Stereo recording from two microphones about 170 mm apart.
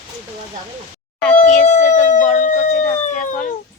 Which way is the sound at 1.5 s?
45° left (ahead or behind).